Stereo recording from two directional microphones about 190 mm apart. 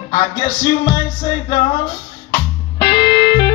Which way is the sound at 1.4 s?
40° left (ahead or behind).